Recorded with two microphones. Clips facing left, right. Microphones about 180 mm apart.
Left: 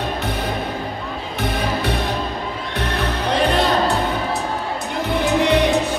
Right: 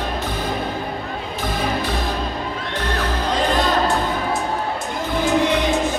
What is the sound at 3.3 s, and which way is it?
Music, 65° left (ahead or behind).